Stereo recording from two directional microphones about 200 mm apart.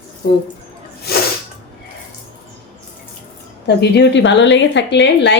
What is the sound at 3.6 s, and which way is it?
A woman's voice, 60° left (ahead or behind).